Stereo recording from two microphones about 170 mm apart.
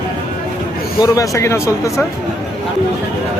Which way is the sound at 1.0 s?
20° left (ahead or behind).